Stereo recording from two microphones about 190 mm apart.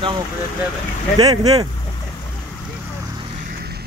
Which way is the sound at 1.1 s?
20° right (ahead or behind).